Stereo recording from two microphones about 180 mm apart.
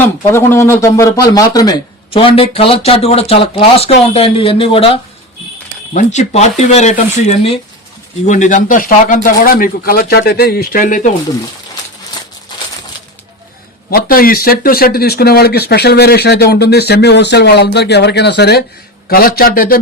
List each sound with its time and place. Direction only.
0.3 s speech: 15° left (ahead or behind); by 11.1 s 45° left (ahead or behind)
13.9 s speech: 55° left (ahead or behind)
19.0 s speech: 55° left (ahead or behind)